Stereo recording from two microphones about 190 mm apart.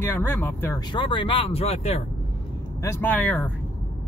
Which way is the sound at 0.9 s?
25° left (ahead or behind).